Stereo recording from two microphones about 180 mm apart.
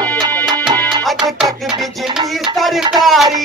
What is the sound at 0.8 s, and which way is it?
Music, centre (ahead or behind).